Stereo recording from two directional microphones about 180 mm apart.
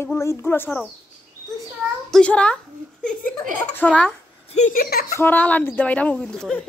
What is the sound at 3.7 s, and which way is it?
Speech, 10° left (ahead or behind).